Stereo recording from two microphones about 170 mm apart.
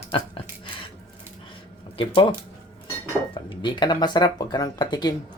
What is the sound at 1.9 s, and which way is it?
Speech, 30° left (ahead or behind).